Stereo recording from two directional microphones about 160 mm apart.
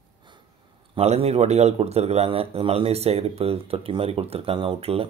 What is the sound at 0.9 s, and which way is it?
Speech, 40° right (ahead or behind).